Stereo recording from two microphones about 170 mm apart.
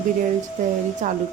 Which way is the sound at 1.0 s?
45° right (ahead or behind).